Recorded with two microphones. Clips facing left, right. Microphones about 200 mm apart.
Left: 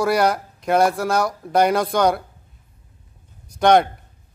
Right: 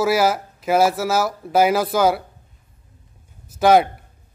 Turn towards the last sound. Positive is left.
turn(degrees=-5)  # may be behind; listen again after turning